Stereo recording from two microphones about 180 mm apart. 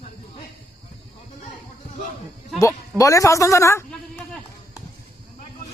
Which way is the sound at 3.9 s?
5° left (ahead or behind).